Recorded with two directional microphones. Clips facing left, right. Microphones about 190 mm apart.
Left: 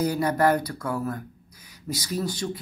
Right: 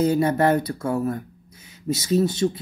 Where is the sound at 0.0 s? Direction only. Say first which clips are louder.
Right 3 dB; 25° right (ahead or behind).